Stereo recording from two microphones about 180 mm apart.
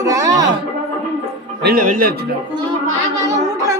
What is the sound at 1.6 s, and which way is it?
Speech, 50° right (ahead or behind).